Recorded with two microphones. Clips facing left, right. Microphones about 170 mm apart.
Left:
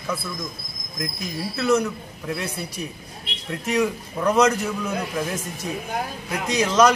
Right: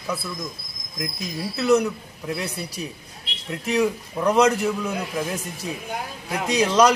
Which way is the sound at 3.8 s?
10° right (ahead or behind).